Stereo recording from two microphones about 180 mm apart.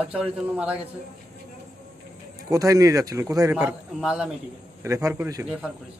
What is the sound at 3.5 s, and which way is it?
Speech, 5° right (ahead or behind).